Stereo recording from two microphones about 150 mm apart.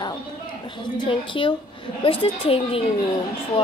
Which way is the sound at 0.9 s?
35° left (ahead or behind).